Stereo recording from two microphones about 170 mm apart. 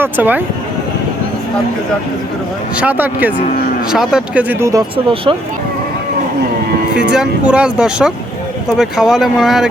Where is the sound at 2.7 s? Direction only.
10° right (ahead or behind).